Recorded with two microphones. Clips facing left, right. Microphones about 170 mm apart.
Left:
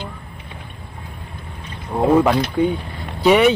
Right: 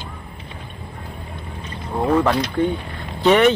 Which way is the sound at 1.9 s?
15° left (ahead or behind).